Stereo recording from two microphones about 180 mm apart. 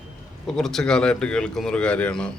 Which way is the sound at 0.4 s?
Centre (ahead or behind).